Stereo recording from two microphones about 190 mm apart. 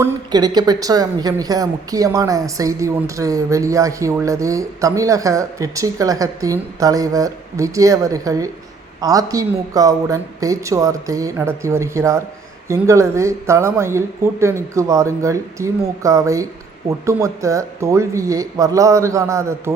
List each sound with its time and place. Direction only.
0.0 s a woman's voice: 20° right (ahead or behind)